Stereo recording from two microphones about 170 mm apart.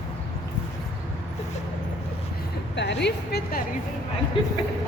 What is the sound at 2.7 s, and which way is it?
Speech, 90° left.